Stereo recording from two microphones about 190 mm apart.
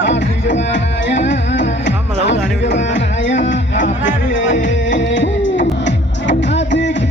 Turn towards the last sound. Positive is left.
turn(degrees=70)  # may be behind; listen again after turning